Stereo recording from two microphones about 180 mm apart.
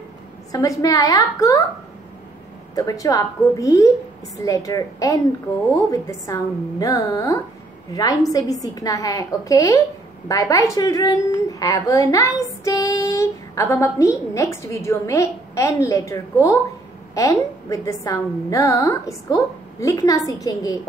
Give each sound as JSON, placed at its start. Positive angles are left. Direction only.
{"t": 0.5, "sound": "a woman's voice", "side_deg": 20}
{"t": 2.7, "sound": "a woman's voice", "side_deg": 20}